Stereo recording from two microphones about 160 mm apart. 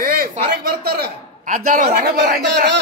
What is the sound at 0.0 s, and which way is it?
A man's voice, 70° right (ahead or behind).